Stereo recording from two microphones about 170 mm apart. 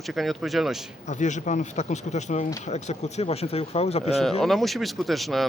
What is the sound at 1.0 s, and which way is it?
Speech, 45° left (ahead or behind).